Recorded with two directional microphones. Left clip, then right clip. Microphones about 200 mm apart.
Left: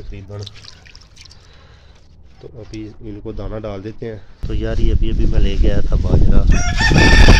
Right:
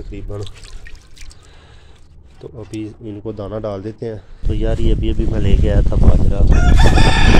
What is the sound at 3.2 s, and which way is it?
Speech, 5° right (ahead or behind).